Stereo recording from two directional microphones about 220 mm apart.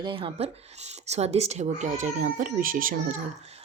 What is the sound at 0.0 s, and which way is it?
A woman's voice, 25° right (ahead or behind).